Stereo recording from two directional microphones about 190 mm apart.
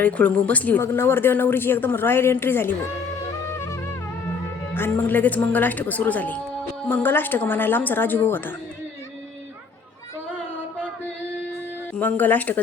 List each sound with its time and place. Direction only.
0.0 s speech: 10° left (ahead or behind)
4.7 s speech: 10° left (ahead or behind)
11.9 s speech: 10° left (ahead or behind)